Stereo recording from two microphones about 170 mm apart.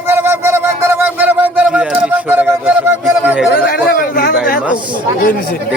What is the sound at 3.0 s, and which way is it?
Speech, 5° right (ahead or behind).